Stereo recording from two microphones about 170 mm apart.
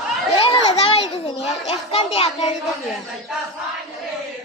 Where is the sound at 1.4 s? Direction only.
40° left (ahead or behind).